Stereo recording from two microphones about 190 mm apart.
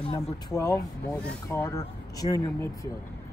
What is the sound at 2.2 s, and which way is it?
Speech, 30° left (ahead or behind).